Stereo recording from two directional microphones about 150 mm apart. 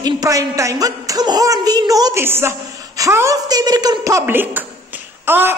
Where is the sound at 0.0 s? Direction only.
25° right (ahead or behind).